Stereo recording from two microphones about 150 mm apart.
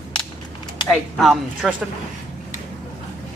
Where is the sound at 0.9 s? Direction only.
Centre (ahead or behind).